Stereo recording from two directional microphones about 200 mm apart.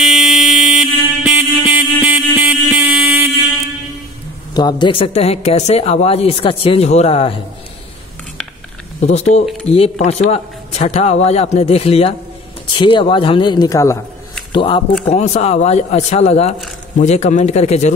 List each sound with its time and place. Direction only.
0.0 s vehicle horn: centre (ahead or behind)
2.0 s a sound: 10° right (ahead or behind)
4.6 s a woman's voice: 20° left (ahead or behind)
9.0 s a woman's voice: 35° left (ahead or behind)